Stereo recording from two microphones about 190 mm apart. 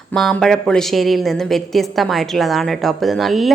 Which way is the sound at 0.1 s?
Centre (ahead or behind).